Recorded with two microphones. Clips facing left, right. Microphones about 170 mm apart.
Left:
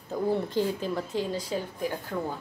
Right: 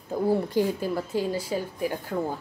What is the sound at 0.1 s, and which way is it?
A woman's voice, 10° right (ahead or behind).